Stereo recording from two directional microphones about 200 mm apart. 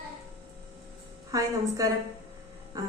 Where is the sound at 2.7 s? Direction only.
20° right (ahead or behind).